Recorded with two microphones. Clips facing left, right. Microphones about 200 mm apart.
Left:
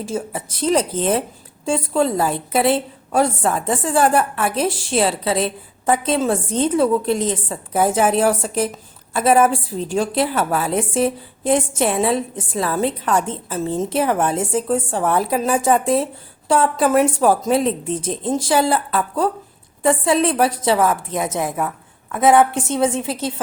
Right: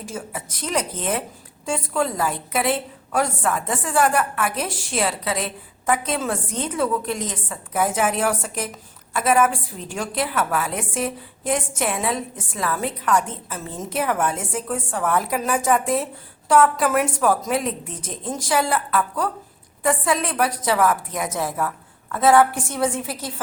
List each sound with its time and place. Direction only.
0.0 s a woman's voice: 30° left (ahead or behind)